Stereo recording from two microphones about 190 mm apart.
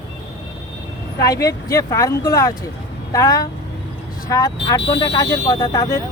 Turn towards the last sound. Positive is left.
turn(degrees=20)  # may be behind; listen again after turning